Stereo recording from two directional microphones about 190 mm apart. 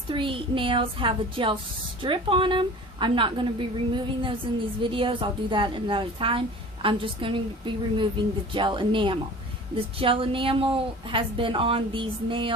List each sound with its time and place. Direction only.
0.1 s a woman's voice: 25° right (ahead or behind)